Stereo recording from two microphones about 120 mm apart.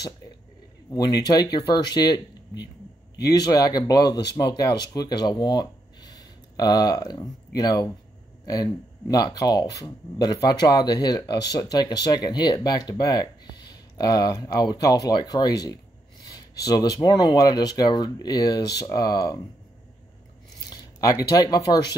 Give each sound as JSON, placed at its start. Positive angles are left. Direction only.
{"t": 0.9, "sound": "speech", "side_deg": 35}
{"t": 20.7, "sound": "speech", "side_deg": 30}